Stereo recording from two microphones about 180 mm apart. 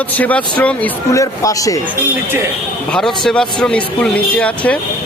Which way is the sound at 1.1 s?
20° left (ahead or behind).